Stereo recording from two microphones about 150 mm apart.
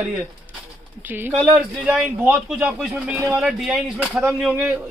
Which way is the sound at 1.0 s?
15° right (ahead or behind).